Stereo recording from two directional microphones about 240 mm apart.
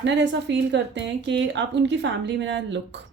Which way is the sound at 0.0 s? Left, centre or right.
Right.